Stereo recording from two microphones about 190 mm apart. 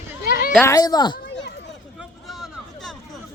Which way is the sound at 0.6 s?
20° left (ahead or behind).